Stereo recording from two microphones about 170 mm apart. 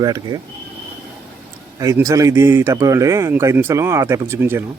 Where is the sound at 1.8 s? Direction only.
20° right (ahead or behind).